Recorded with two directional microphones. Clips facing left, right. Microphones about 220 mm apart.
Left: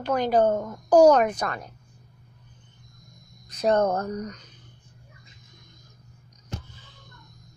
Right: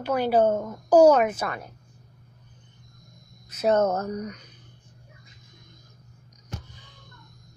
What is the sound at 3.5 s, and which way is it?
Speech, 5° right (ahead or behind).